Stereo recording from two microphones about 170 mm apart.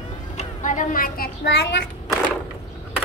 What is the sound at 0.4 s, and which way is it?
A woman's voice, 50° left (ahead or behind).